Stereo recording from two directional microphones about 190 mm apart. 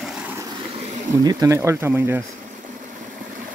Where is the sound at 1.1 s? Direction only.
20° right (ahead or behind).